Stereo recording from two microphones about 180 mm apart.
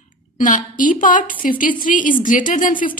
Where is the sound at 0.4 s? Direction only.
45° left (ahead or behind).